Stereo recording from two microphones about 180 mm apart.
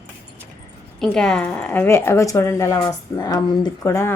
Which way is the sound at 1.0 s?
5° left (ahead or behind).